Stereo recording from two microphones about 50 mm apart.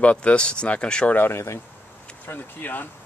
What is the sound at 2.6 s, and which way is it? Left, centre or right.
Speech, left.